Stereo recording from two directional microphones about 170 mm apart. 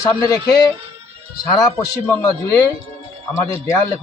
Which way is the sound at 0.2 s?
25° left (ahead or behind).